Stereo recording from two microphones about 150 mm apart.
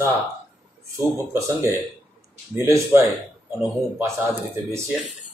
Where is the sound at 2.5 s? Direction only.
15° right (ahead or behind).